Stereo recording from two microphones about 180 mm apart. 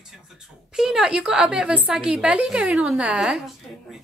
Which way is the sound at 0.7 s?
5° right (ahead or behind).